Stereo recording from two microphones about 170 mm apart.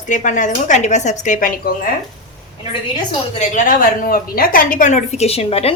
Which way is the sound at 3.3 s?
50° left (ahead or behind).